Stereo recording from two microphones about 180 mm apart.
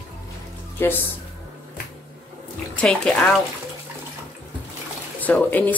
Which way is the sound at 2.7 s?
5° left (ahead or behind).